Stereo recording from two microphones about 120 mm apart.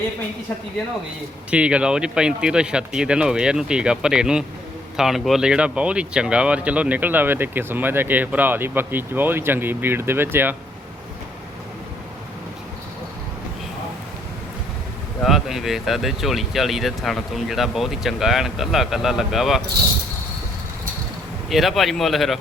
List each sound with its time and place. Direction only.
1.5 s speech: 10° right (ahead or behind)
15.2 s speech: centre (ahead or behind)
21.5 s speech: centre (ahead or behind)